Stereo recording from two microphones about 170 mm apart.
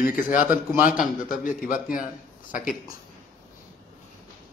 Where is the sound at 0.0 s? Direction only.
55° left (ahead or behind).